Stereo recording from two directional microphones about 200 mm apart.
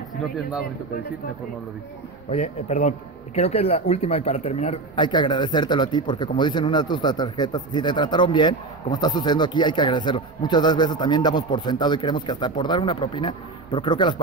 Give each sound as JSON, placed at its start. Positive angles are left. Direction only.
{"t": 2.3, "sound": "speech", "side_deg": 30}